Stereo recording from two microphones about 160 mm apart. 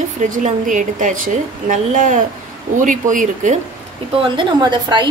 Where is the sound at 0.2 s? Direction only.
50° right (ahead or behind).